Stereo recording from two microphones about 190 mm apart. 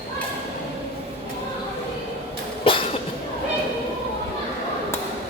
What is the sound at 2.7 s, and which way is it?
Cough, 25° left (ahead or behind).